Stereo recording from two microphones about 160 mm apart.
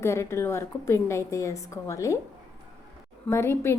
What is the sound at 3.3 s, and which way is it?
Speech, 15° left (ahead or behind).